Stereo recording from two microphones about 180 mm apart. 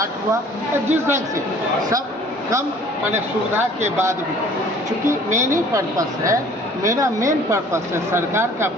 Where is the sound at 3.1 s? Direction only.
15° right (ahead or behind).